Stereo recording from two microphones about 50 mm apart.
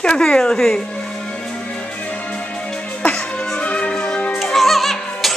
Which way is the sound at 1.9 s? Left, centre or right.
Left.